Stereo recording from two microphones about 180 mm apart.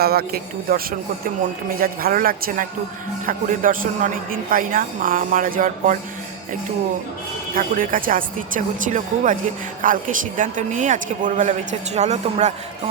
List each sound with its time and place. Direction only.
0.0 s a man's voice: 60° right (ahead or behind)
7.5 s a woman's voice: 50° right (ahead or behind)